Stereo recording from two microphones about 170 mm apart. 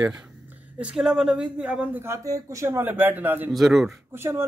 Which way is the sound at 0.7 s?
5° right (ahead or behind).